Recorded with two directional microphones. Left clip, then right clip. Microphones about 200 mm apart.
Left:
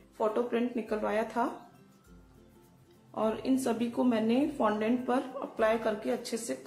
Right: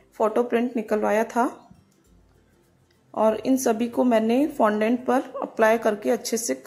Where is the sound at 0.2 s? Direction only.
35° right (ahead or behind).